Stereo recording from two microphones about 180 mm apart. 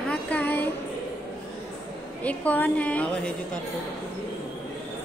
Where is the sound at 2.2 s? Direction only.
10° left (ahead or behind).